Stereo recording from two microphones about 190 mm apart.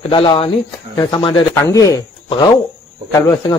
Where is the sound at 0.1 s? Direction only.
30° left (ahead or behind).